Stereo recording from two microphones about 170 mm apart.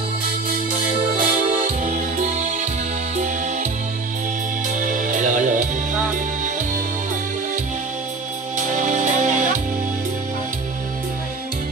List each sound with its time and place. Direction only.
1.1 s music: 45° right (ahead or behind)
4.7 s music: 50° right (ahead or behind)
8.5 s music: 45° right (ahead or behind)